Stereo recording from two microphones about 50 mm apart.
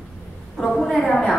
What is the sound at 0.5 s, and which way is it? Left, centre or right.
Speech, centre.